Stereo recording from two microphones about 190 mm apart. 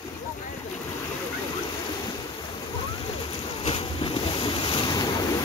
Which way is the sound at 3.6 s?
30° left (ahead or behind).